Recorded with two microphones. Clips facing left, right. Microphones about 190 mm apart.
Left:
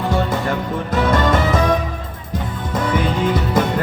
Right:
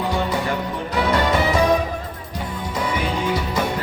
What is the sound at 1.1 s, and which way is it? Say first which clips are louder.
Music: left 1 dB; 50° left (ahead or behind).